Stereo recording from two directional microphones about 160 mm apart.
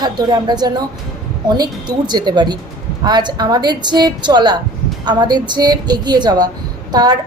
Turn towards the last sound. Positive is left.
turn(degrees=-25)  # may be behind; listen again after turning